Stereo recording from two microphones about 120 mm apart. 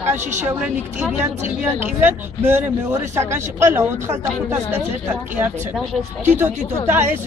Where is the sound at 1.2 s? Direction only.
15° right (ahead or behind).